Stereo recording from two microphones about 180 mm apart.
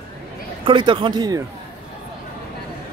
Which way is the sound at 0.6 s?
30° right (ahead or behind).